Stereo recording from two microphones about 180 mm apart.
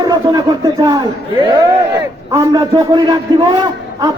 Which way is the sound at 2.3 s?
20° right (ahead or behind).